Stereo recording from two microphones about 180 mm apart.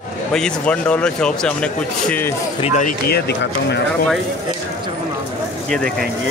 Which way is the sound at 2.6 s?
40° left (ahead or behind).